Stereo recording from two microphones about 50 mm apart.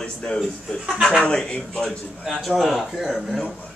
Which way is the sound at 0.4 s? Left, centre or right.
Centre.